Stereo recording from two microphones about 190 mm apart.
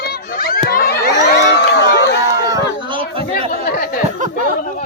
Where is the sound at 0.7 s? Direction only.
55° left (ahead or behind).